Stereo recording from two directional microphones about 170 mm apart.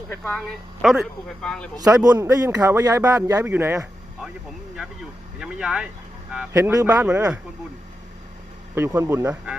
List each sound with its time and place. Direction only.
0.1 s speech: 5° left (ahead or behind)
1.7 s a man's voice: 20° right (ahead or behind)
5.4 s speech: 5° right (ahead or behind)
6.5 s speech: 15° right (ahead or behind)
8.7 s speech: 15° right (ahead or behind)